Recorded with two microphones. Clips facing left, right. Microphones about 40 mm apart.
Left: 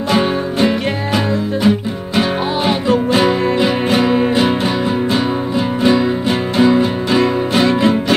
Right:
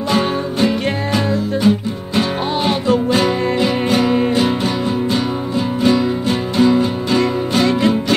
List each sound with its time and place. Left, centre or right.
0.1 s music: centre
2.9 s music: centre
5.8 s music: centre